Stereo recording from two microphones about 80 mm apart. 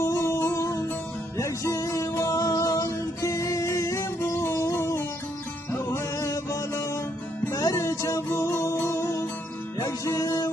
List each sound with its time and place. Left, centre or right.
0.0 s music: left